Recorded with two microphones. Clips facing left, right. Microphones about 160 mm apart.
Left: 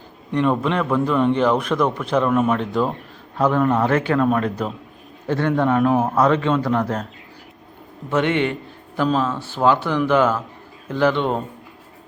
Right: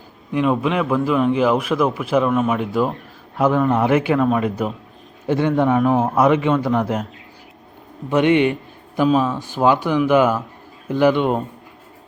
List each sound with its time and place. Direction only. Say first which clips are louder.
0.3 s a man's voice: right 1 dB; 5° right (ahead or behind)
8.1 s speech: right 4 dB; 15° right (ahead or behind)